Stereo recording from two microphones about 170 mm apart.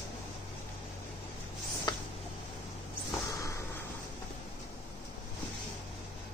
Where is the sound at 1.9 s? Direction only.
25° left (ahead or behind).